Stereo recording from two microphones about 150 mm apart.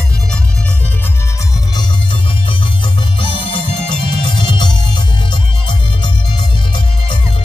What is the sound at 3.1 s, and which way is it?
Music, 35° left (ahead or behind).